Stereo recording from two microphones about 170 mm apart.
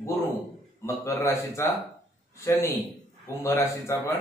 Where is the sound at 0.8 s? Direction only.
15° left (ahead or behind).